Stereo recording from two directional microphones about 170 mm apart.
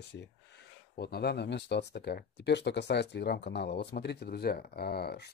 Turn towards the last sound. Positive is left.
turn(degrees=70)  # may be behind; listen again after turning